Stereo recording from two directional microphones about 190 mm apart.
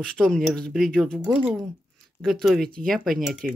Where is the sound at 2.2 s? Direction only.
Centre (ahead or behind).